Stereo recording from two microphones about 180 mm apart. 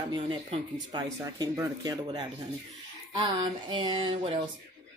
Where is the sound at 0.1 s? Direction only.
30° right (ahead or behind).